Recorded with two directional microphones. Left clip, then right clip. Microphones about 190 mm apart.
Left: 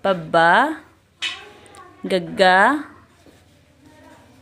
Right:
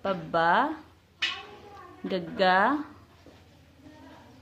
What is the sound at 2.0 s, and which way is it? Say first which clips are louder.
Speech: left 9 dB; 25° left (ahead or behind).